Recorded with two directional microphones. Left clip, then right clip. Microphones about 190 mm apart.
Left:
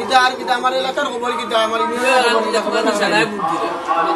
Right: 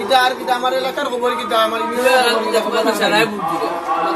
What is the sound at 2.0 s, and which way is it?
A man's voice, 10° left (ahead or behind).